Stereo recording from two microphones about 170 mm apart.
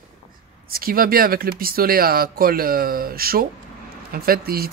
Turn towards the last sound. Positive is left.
turn(degrees=-60)  # may be behind; listen again after turning